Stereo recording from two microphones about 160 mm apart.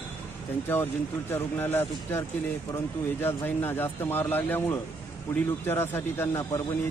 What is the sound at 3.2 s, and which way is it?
Speech, 15° left (ahead or behind).